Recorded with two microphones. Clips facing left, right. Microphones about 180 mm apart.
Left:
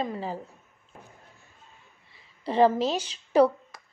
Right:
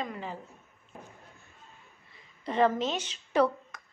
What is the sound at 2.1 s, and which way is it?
A woman's voice, 30° left (ahead or behind).